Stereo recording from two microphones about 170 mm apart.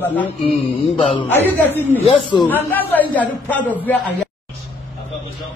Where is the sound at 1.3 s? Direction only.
10° left (ahead or behind).